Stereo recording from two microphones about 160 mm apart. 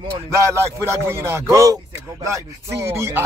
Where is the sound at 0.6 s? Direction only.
15° right (ahead or behind).